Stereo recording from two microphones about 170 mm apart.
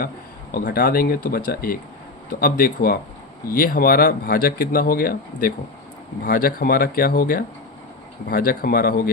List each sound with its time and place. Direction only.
0.5 s speech: 60° left (ahead or behind)